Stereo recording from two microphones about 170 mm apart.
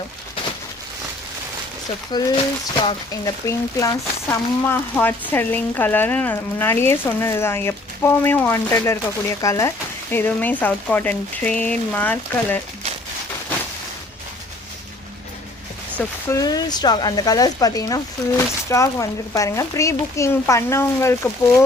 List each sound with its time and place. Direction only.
2.1 s speech: 25° left (ahead or behind)
16.0 s speech: 20° left (ahead or behind)